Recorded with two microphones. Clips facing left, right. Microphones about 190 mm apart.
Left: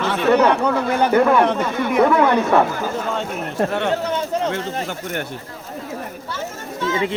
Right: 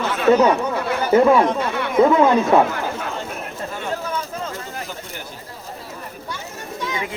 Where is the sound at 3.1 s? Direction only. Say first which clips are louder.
Left 6 dB; 70° left (ahead or behind).